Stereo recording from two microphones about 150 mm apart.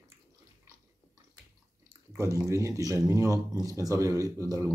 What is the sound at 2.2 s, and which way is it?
Speech, 20° right (ahead or behind).